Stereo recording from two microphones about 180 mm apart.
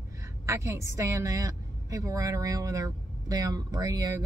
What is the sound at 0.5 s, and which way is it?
A woman's voice, 15° right (ahead or behind).